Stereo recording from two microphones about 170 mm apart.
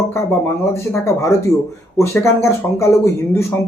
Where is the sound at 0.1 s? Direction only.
15° left (ahead or behind).